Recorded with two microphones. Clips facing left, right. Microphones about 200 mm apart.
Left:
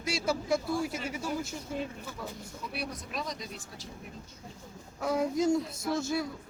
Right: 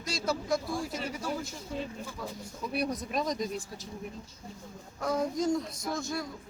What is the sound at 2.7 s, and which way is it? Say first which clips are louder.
Speech: right 7 dB; 45° right (ahead or behind).